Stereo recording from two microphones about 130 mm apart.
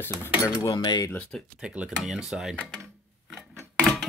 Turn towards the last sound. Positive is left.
turn(degrees=0)  # may be behind; listen again after turning